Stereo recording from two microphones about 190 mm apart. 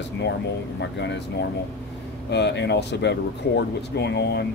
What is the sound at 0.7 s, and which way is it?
Speech, 65° left (ahead or behind).